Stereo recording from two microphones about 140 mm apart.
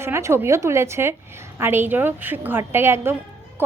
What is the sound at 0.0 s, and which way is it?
A woman's voice, 20° right (ahead or behind).